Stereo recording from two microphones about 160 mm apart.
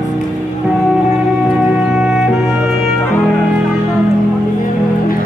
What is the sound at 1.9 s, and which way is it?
Music, 5° right (ahead or behind).